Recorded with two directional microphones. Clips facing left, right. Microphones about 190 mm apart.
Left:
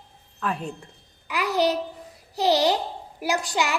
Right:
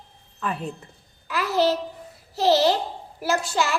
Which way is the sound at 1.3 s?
15° left (ahead or behind).